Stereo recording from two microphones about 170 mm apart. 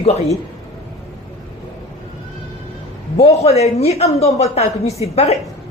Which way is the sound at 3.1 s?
35° left (ahead or behind).